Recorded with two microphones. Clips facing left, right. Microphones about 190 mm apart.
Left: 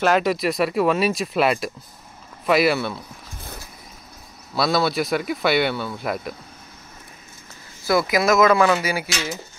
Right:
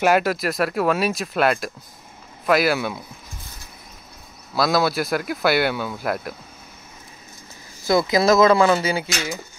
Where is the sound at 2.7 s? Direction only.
10° right (ahead or behind).